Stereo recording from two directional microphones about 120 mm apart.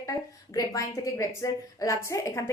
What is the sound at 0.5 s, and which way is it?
A woman's voice, 30° left (ahead or behind).